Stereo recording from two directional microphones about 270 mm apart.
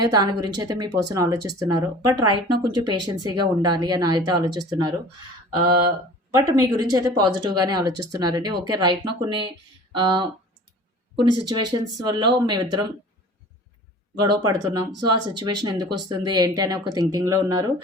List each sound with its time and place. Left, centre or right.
0.0 s speech: centre
6.3 s speech: centre
14.4 s speech: centre